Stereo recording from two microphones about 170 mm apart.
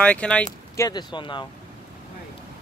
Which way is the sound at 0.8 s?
25° left (ahead or behind).